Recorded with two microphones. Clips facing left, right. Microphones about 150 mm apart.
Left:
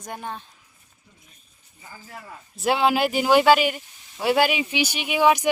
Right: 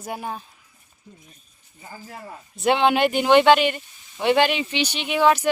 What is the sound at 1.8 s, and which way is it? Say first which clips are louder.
Speech: right 3 dB; 35° right (ahead or behind).